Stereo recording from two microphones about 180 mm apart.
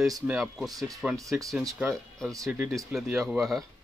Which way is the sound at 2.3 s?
15° right (ahead or behind).